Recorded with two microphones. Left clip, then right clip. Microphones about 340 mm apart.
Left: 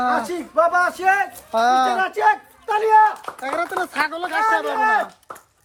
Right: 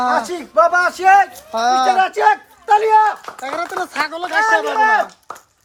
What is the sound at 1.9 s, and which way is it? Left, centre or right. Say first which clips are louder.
A man's voice: right 4 dB; right.